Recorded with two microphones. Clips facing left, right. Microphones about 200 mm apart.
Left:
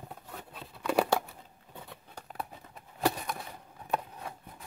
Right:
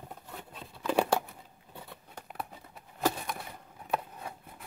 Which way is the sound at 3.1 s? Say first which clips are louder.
Left 1 dB; 10° right (ahead or behind).